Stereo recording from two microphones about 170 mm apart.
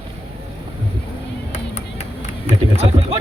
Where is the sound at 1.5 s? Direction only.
40° left (ahead or behind).